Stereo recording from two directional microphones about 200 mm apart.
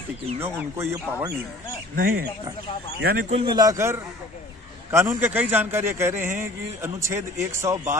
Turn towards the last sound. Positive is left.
turn(degrees=-15)  # may be behind; listen again after turning